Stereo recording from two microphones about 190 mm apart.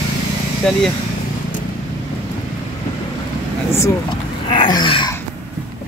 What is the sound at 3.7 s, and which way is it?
Speech, 20° left (ahead or behind).